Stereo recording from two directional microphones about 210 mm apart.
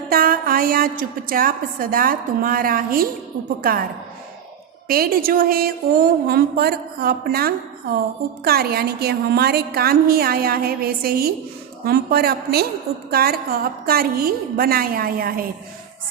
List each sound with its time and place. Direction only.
0.1 s a woman's voice: 45° right (ahead or behind)
4.9 s a woman's voice: 45° right (ahead or behind)